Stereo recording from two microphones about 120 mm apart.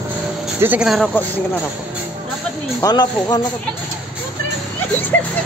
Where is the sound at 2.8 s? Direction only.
30° left (ahead or behind).